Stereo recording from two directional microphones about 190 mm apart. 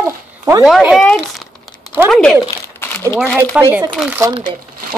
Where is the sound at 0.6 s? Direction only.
Centre (ahead or behind).